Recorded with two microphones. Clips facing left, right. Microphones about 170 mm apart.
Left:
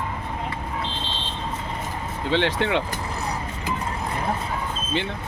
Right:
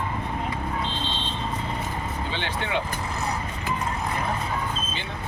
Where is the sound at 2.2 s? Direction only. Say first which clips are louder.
Left 12 dB; 85° left.